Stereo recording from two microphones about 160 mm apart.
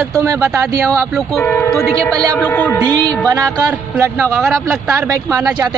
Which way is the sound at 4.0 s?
15° right (ahead or behind).